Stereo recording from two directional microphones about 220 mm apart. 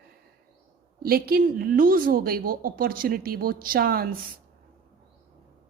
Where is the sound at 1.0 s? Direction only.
45° right (ahead or behind).